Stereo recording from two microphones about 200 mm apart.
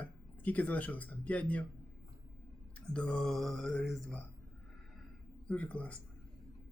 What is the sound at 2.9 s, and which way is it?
Mantra, 5° left (ahead or behind).